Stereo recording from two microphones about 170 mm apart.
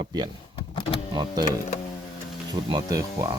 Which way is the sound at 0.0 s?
25° right (ahead or behind).